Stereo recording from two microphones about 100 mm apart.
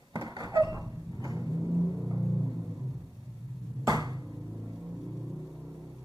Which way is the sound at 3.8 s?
40° right (ahead or behind).